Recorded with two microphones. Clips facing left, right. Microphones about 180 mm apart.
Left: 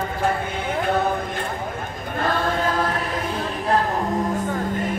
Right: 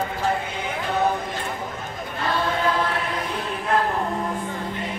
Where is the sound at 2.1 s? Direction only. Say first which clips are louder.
Left 2 dB; 45° left (ahead or behind).